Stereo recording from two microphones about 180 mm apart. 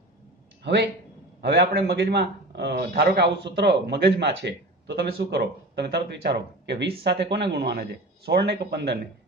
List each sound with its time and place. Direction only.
1.4 s speech: 65° right (ahead or behind)